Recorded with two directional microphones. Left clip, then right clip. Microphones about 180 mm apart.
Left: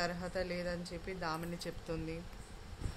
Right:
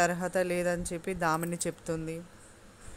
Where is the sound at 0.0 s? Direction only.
45° right (ahead or behind).